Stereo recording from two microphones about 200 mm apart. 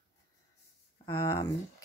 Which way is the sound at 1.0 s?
25° left (ahead or behind).